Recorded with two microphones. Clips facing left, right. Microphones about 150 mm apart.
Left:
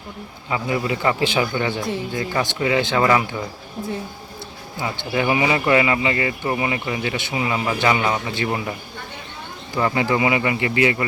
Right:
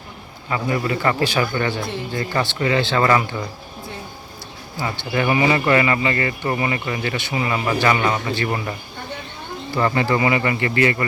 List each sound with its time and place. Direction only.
0.5 s speech: 15° left (ahead or behind)
4.8 s speech: 10° left (ahead or behind)
9.7 s speech: 10° left (ahead or behind)